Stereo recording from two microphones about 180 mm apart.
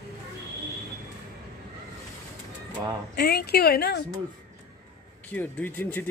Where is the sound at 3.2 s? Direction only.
60° left (ahead or behind).